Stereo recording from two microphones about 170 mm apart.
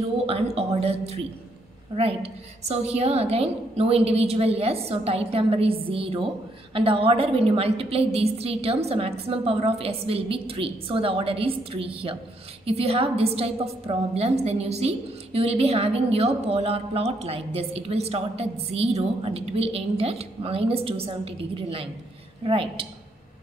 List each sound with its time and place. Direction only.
0.3 s a woman's voice: 35° right (ahead or behind)